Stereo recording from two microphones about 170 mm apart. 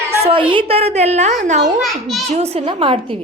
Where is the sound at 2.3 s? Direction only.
35° right (ahead or behind).